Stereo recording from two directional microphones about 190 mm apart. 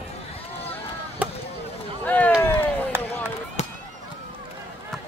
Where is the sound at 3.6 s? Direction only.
35° left (ahead or behind).